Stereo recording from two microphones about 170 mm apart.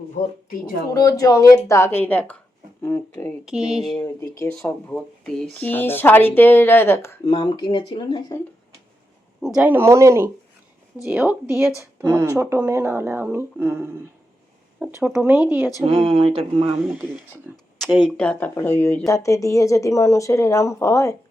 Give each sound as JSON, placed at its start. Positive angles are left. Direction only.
{"t": 0.2, "sound": "speech", "side_deg": 55}
{"t": 0.9, "sound": "speech", "side_deg": 20}
{"t": 3.4, "sound": "speech", "side_deg": -5}
{"t": 4.0, "sound": "speech", "side_deg": 20}
{"t": 7.3, "sound": "speech", "side_deg": 30}
{"t": 9.6, "sound": "speech", "side_deg": -10}
{"t": 15.0, "sound": "speech", "side_deg": -10}
{"t": 15.9, "sound": "speech", "side_deg": -30}
{"t": 17.7, "sound": "speech", "side_deg": 0}